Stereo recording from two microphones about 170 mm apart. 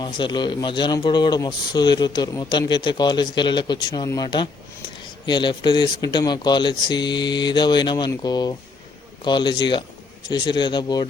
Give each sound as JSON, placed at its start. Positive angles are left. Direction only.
{"t": 0.0, "sound": "speech", "side_deg": 25}